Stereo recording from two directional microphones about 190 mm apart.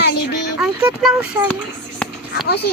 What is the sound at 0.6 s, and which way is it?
Speech, 5° right (ahead or behind).